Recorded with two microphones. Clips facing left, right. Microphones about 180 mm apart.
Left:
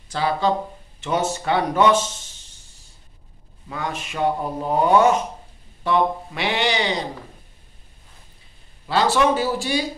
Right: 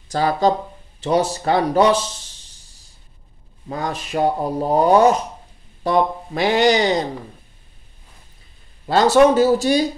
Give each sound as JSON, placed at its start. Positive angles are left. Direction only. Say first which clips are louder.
{"t": 0.1, "sound": "speech", "louder": "right 4 dB", "side_deg": -40}
{"t": 3.6, "sound": "speech", "louder": "right 3 dB", "side_deg": -35}
{"t": 8.8, "sound": "speech", "louder": "right 6 dB", "side_deg": -45}